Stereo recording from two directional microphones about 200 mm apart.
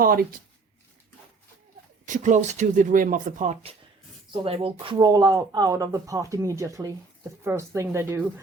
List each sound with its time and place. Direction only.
0.0 s speech: 45° right (ahead or behind)
2.0 s speech: 40° right (ahead or behind); by 8.2 s 15° right (ahead or behind)